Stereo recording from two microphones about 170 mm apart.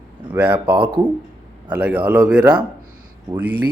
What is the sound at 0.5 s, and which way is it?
Speech, 30° right (ahead or behind).